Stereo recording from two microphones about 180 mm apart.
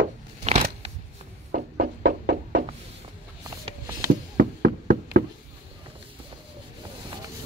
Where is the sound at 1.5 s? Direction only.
65° right (ahead or behind).